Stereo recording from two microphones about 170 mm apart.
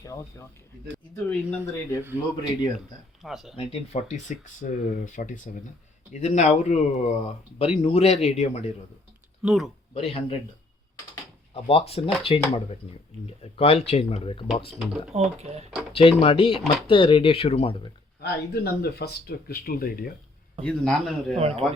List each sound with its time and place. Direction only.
0.0 s speech: 20° left (ahead or behind)
3.2 s a man's voice: centre (ahead or behind)
3.5 s speech: 35° left (ahead or behind)
9.4 s a man's voice: centre (ahead or behind)
9.9 s speech: 35° left (ahead or behind)
11.5 s speech: 35° left (ahead or behind)
15.1 s speech: 40° right (ahead or behind)
15.9 s speech: 35° left (ahead or behind)
18.2 s speech: 70° left (ahead or behind)
20.7 s a man's voice: 5° left (ahead or behind)
21.3 s speech: 35° right (ahead or behind)